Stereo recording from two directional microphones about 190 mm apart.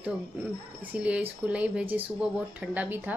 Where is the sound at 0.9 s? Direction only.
5° right (ahead or behind).